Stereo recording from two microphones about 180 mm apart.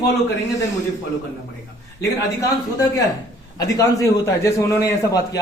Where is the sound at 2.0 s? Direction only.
20° left (ahead or behind).